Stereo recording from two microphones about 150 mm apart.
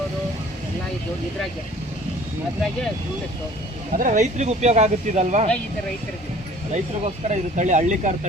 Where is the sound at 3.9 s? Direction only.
65° right (ahead or behind).